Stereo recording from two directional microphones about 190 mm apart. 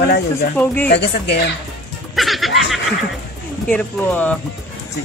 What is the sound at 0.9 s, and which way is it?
Speech, 60° left (ahead or behind).